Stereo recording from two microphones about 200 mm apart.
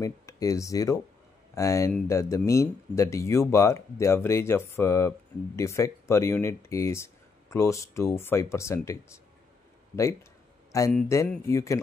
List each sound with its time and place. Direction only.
0.0 s speech: 15° left (ahead or behind)
10.9 s speech: 10° left (ahead or behind)